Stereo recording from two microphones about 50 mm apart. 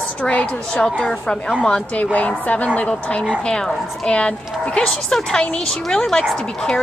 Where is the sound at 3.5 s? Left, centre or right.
Centre.